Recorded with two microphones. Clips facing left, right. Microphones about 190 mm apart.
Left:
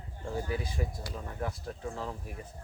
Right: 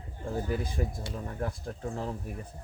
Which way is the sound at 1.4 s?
50° right (ahead or behind).